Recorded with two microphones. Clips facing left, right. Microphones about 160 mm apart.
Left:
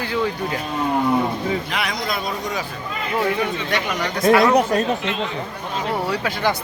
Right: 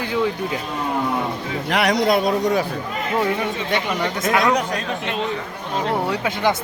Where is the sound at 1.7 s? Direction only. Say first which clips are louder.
Right 7 dB; 70° right (ahead or behind).